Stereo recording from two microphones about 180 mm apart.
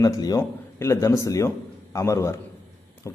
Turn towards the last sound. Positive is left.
turn(degrees=15)  # may be behind; listen again after turning